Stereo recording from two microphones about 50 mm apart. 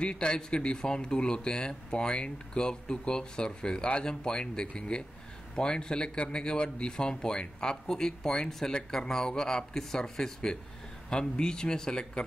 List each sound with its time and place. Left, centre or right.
0.0 s speech: centre